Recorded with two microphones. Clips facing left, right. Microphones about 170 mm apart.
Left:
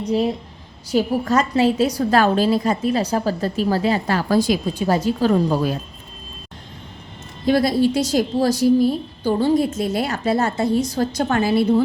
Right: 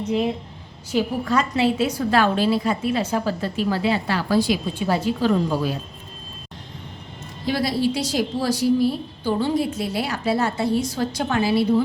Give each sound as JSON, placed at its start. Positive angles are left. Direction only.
{"t": 0.1, "sound": "a woman's voice", "side_deg": 35}
{"t": 7.4, "sound": "a woman's voice", "side_deg": 50}